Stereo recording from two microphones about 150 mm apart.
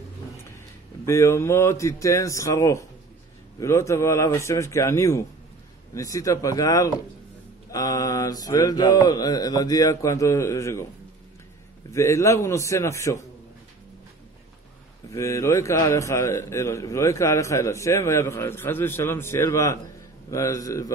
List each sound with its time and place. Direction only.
1.0 s a man's voice: 20° left (ahead or behind)
11.9 s a man's voice: 20° left (ahead or behind)
15.0 s a man's voice: 20° left (ahead or behind)